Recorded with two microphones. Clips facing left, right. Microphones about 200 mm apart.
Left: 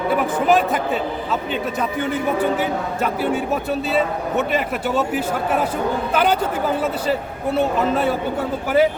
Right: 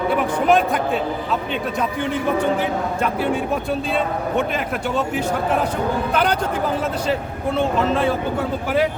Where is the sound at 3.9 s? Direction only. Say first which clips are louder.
Left 2 dB; 5° left (ahead or behind).